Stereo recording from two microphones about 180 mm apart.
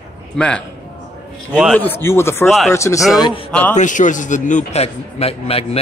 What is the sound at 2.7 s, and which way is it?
Speech, 15° left (ahead or behind).